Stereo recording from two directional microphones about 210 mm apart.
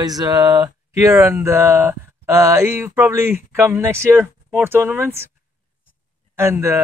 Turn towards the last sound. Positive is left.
turn(degrees=-10)  # may be behind; listen again after turning